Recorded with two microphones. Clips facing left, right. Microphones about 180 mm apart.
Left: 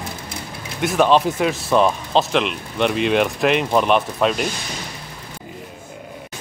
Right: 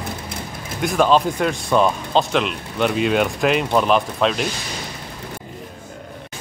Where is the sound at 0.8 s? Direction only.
Centre (ahead or behind).